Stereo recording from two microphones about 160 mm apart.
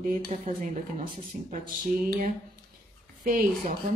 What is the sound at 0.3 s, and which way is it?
Speech, 50° right (ahead or behind).